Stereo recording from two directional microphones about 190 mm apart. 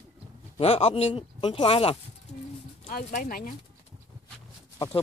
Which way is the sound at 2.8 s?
45° left (ahead or behind).